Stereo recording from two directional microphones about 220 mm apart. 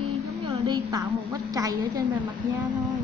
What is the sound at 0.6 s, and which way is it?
A woman's voice, 20° right (ahead or behind).